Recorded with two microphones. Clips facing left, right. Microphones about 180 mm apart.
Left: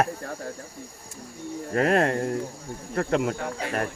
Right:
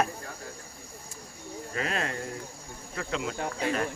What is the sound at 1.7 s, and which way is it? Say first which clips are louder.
Speech: left 11 dB; 55° left (ahead or behind).